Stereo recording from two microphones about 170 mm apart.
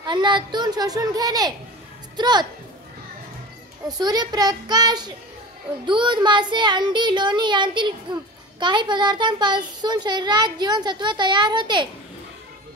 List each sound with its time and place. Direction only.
0.0 s a child's voice: 25° right (ahead or behind)
4.0 s speech: 25° right (ahead or behind)